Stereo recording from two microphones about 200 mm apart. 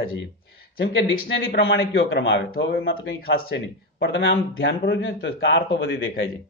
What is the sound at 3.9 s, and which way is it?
Speech, 70° left (ahead or behind).